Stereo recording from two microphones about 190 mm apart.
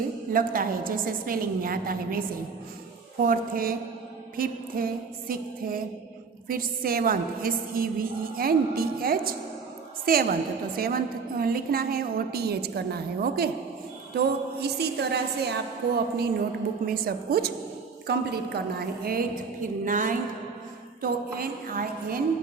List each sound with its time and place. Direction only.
0.3 s a woman's voice: 50° right (ahead or behind)
3.2 s a woman's voice: 50° right (ahead or behind)
6.5 s a woman's voice: 50° right (ahead or behind)